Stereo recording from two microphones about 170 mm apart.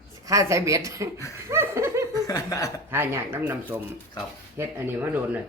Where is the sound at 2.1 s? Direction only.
20° left (ahead or behind).